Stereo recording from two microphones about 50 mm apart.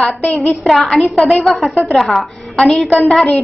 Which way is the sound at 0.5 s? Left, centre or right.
Centre.